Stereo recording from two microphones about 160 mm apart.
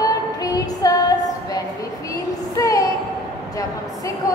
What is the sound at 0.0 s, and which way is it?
Female singing, 25° left (ahead or behind).